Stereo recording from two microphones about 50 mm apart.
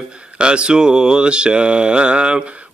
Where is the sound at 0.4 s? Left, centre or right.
Centre.